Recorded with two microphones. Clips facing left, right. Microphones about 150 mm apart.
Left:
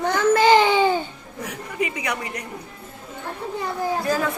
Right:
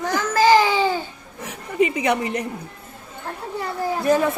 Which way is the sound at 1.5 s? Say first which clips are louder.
Right 7 dB; 25° right (ahead or behind).